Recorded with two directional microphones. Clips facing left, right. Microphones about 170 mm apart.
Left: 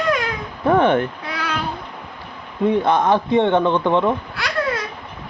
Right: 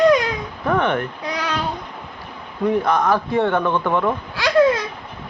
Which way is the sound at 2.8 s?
25° left (ahead or behind).